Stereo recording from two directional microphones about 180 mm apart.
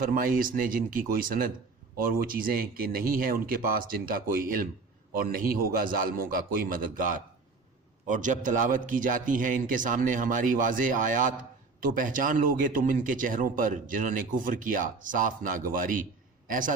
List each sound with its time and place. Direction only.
0.0 s a man's voice: 50° right (ahead or behind)
8.0 s a man's voice: 45° right (ahead or behind)